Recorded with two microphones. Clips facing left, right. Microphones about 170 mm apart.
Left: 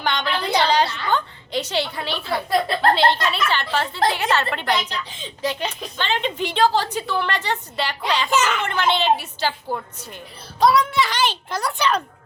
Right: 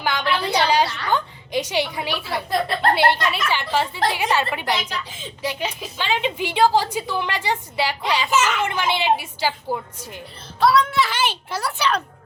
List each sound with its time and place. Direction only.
0.0 s a woman's voice: 10° right (ahead or behind)
10.6 s speech: 15° left (ahead or behind)
10.9 s a child's voice: 5° right (ahead or behind)